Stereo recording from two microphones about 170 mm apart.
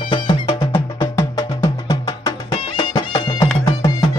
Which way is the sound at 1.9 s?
25° left (ahead or behind).